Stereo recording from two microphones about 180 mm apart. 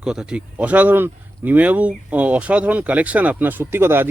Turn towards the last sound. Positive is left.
turn(degrees=-10)  # may be behind; listen again after turning